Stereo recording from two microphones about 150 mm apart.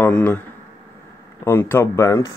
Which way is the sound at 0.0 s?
10° left (ahead or behind).